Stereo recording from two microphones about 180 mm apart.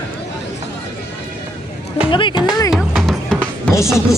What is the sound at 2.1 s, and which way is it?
Music, 25° left (ahead or behind).